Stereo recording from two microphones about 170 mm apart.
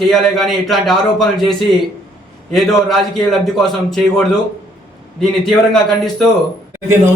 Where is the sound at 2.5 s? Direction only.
Centre (ahead or behind).